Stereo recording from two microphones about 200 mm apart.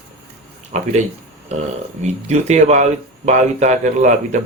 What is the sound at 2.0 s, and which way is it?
Speech, 35° right (ahead or behind).